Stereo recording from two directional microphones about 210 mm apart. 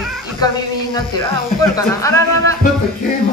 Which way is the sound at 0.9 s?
20° left (ahead or behind).